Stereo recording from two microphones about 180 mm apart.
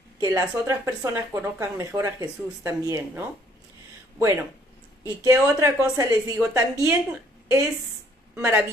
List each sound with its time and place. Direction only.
0.2 s speech: 15° right (ahead or behind)